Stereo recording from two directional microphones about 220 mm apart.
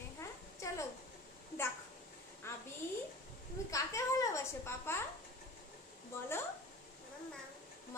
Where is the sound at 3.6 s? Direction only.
15° left (ahead or behind).